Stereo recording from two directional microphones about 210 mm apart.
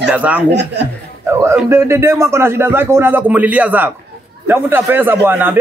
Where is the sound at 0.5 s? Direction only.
55° right (ahead or behind).